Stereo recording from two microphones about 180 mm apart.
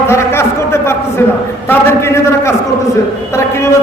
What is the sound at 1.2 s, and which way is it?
A man's voice, 15° left (ahead or behind).